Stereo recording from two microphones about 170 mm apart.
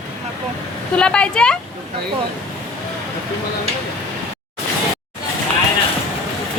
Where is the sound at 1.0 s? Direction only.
5° left (ahead or behind).